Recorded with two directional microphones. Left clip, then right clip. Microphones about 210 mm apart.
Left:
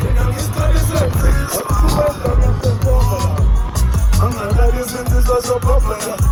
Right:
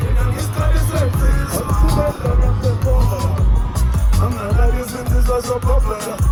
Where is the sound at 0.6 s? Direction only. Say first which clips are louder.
Left 3 dB; 20° left (ahead or behind).